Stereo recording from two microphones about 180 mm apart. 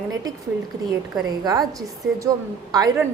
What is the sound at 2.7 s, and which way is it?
Speech, 20° right (ahead or behind).